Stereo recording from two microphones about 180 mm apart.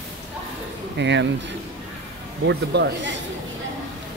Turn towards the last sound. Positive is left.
turn(degrees=-80)